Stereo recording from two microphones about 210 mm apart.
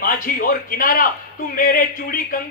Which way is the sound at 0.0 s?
40° left (ahead or behind).